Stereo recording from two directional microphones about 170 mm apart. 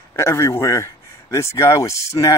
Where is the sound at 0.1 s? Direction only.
15° left (ahead or behind).